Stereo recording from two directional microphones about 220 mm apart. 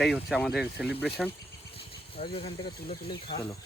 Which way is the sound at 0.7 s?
50° left (ahead or behind).